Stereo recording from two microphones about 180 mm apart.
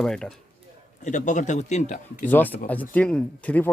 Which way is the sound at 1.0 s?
45° left (ahead or behind).